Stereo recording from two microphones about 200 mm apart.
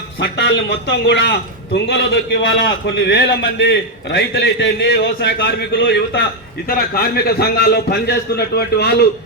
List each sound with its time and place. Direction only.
0.2 s a man's voice: 60° left (ahead or behind)